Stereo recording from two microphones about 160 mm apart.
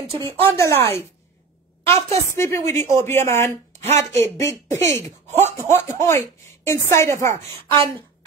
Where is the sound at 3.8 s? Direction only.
45° right (ahead or behind).